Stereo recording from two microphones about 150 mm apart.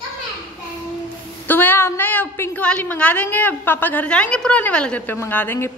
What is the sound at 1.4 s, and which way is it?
A woman's voice, 15° left (ahead or behind).